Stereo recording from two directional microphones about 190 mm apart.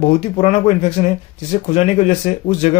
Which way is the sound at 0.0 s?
35° left (ahead or behind).